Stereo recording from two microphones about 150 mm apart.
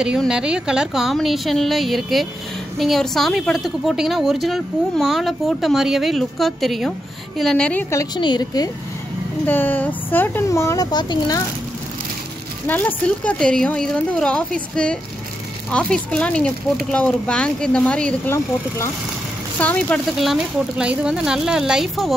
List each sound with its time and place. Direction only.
0.2 s a woman's voice: 5° right (ahead or behind)
7.9 s speech: 25° left (ahead or behind)
9.5 s speech: 10° left (ahead or behind)
12.6 s speech: 10° left (ahead or behind)
19.6 s speech: 10° left (ahead or behind)
20.2 s a woman's voice: 5° right (ahead or behind)